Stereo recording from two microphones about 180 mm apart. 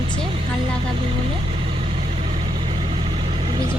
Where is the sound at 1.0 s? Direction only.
30° right (ahead or behind).